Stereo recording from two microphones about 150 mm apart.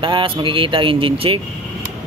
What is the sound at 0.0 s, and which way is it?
Speech, 35° right (ahead or behind).